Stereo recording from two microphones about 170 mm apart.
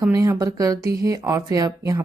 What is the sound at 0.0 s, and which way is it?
Speech, 15° right (ahead or behind).